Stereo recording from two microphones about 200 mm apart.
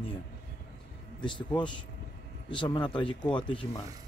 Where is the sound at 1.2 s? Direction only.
25° left (ahead or behind).